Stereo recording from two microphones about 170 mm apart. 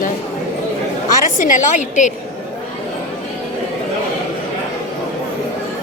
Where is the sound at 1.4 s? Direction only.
50° left (ahead or behind).